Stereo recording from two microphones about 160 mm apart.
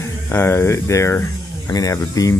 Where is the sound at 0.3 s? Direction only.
15° left (ahead or behind).